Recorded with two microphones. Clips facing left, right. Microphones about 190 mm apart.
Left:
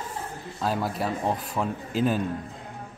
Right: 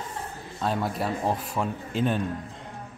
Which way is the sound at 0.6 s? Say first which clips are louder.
Even; centre (ahead or behind).